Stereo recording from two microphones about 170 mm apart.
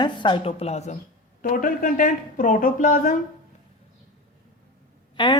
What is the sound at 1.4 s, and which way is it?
A woman's voice, 55° left (ahead or behind).